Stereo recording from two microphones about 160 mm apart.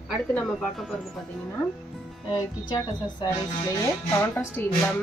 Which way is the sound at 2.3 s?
25° left (ahead or behind).